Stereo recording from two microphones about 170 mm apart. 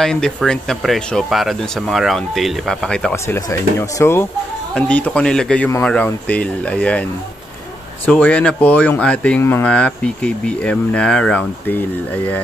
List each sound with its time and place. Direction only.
0.0 s speech: 5° left (ahead or behind)